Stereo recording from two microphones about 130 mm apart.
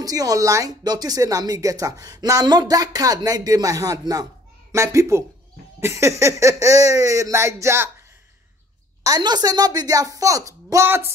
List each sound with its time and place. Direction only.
0.0 s speech: 30° right (ahead or behind)
9.0 s speech: 30° right (ahead or behind)